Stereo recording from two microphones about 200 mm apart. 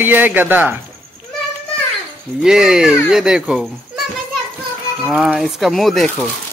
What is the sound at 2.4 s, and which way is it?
Speech, 5° right (ahead or behind).